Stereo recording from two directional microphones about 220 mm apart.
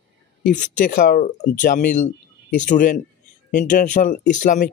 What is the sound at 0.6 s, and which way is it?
Speech, 35° left (ahead or behind).